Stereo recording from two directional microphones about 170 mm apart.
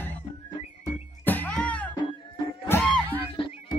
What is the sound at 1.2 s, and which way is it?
Music, 10° left (ahead or behind).